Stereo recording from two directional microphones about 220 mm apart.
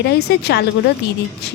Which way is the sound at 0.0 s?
50° left (ahead or behind).